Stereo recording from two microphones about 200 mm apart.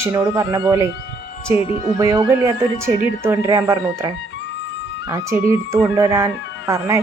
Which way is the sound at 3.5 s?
15° right (ahead or behind).